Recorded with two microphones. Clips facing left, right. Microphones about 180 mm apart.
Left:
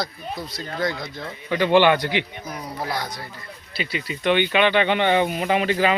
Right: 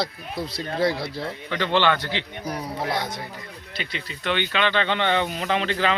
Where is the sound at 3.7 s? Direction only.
10° left (ahead or behind).